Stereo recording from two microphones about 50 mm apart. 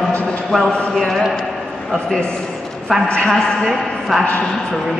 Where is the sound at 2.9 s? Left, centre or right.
Centre.